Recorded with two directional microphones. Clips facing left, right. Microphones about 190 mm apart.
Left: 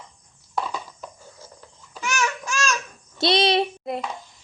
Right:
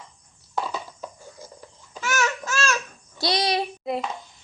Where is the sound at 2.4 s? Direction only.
15° left (ahead or behind).